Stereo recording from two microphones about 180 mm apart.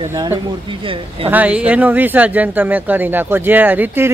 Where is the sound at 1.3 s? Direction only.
10° right (ahead or behind).